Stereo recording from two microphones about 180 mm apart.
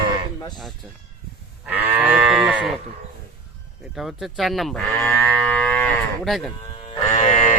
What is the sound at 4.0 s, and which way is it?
Speech, centre (ahead or behind).